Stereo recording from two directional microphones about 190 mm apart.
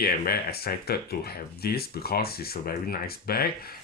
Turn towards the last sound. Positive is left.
turn(degrees=55)  # may be behind; listen again after turning